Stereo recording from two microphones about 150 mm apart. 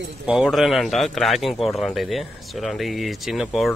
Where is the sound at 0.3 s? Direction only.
Centre (ahead or behind).